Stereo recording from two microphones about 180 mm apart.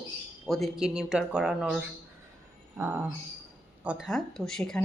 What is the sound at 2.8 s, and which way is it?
Speech, 10° right (ahead or behind).